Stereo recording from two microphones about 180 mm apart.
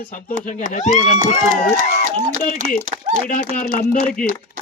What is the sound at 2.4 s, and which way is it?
Speech, 50° left (ahead or behind).